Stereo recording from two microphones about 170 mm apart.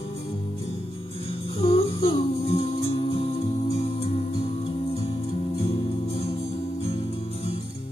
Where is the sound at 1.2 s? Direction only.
35° left (ahead or behind).